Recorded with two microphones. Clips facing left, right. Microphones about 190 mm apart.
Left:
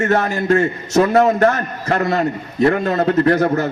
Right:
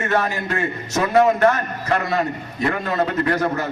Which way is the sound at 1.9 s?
40° left (ahead or behind).